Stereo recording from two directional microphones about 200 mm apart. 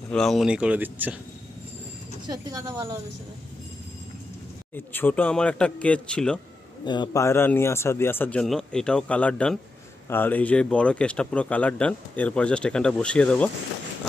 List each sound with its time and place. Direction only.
0.1 s speech: centre (ahead or behind)
2.2 s speech: 20° right (ahead or behind)
4.7 s speech: 10° left (ahead or behind)
6.8 s speech: 20° left (ahead or behind); by 13.5 s 5° left (ahead or behind)